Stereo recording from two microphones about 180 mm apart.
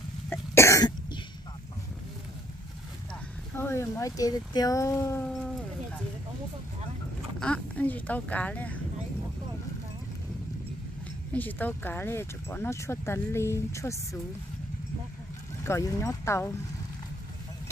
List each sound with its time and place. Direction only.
0.3 s cough: 15° left (ahead or behind)
3.5 s speech: 15° left (ahead or behind)
7.3 s speech: 5° left (ahead or behind)
11.3 s speech: 10° left (ahead or behind)
15.6 s speech: 15° left (ahead or behind)